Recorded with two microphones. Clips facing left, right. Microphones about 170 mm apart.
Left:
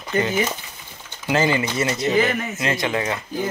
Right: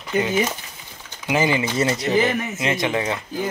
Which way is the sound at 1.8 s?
35° right (ahead or behind).